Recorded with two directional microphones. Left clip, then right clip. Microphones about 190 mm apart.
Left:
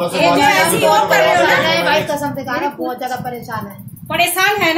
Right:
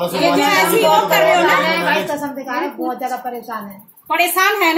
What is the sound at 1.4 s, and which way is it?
A child's voice, 30° left (ahead or behind).